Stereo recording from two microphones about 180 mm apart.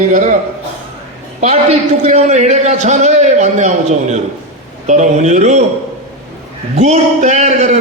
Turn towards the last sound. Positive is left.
turn(degrees=-40)  # may be behind; listen again after turning